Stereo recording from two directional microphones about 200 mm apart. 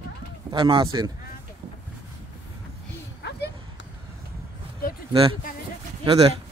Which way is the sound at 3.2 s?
55° left (ahead or behind).